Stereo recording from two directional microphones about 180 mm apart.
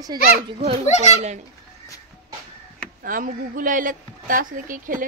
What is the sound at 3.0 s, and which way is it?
A woman's voice, 50° right (ahead or behind).